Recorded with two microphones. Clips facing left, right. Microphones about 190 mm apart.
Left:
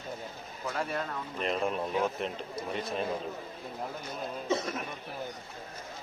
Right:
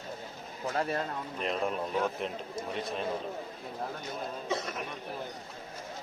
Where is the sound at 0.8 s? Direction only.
30° right (ahead or behind).